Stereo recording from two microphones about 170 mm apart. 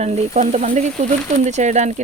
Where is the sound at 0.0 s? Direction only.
45° right (ahead or behind).